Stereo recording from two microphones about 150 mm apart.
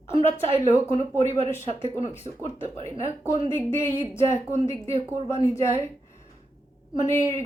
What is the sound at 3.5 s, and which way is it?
Speech, 15° left (ahead or behind).